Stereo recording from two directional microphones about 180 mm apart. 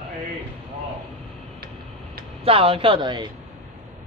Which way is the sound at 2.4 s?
30° right (ahead or behind).